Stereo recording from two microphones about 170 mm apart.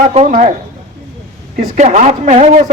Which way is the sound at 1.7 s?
45° right (ahead or behind).